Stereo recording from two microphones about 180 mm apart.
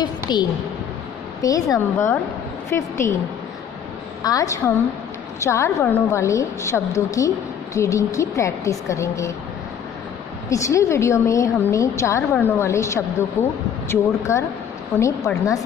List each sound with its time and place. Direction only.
0.0 s a sound: 25° left (ahead or behind)
1.4 s a woman's voice: 20° left (ahead or behind)
4.2 s a woman's voice: 20° left (ahead or behind)
10.5 s a woman's voice: 15° left (ahead or behind)